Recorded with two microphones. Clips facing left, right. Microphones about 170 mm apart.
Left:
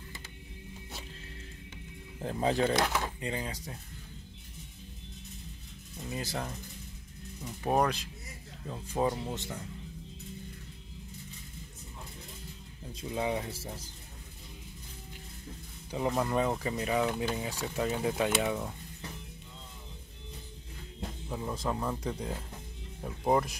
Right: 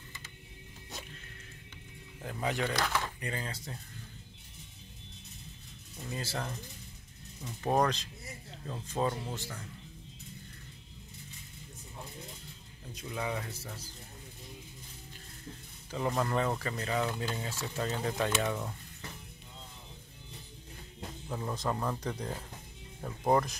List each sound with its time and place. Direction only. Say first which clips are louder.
2.2 s speech: left 5 dB; 30° left (ahead or behind); by 3.7 s 15° left (ahead or behind)
6.0 s speech: left 1 dB; 15° left (ahead or behind)
12.9 s speech: left 4 dB; 25° left (ahead or behind)
16.1 s speech: left 2 dB; 10° left (ahead or behind)
21.3 s speech: even; 5° left (ahead or behind)